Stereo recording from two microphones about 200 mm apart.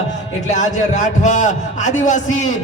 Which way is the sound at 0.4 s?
35° left (ahead or behind).